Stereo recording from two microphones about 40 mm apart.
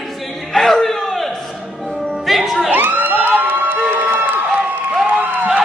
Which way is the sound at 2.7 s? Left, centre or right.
Right.